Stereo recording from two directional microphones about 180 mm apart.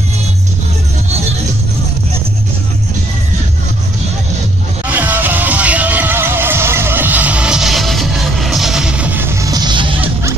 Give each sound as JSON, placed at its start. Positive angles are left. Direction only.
{"t": 4.8, "sound": "music", "side_deg": -10}